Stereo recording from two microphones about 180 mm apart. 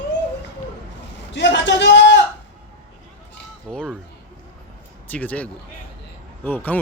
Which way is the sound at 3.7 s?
5° left (ahead or behind).